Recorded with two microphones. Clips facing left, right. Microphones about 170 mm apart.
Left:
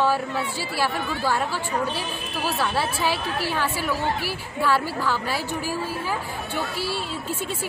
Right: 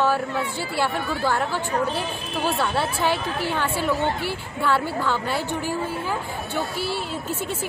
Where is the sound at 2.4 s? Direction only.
Centre (ahead or behind).